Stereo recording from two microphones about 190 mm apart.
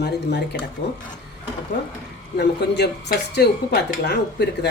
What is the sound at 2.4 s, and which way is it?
Speech, 60° left (ahead or behind).